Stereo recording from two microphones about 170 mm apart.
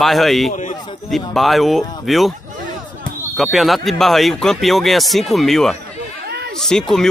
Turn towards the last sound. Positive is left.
turn(degrees=5)  # may be behind; listen again after turning